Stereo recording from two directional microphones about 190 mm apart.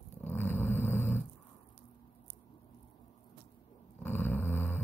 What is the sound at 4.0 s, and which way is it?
Dog, 10° left (ahead or behind).